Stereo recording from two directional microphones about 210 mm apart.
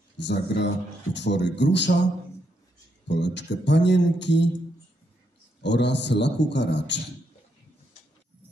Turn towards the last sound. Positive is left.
turn(degrees=55)  # may be behind; listen again after turning